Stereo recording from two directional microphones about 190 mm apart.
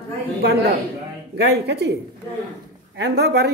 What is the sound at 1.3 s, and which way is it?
Speech, 60° right (ahead or behind).